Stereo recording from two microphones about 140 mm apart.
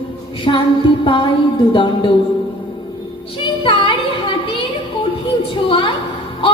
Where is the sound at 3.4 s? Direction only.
35° left (ahead or behind).